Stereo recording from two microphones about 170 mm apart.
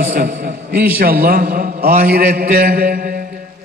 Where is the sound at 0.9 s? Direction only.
60° right (ahead or behind).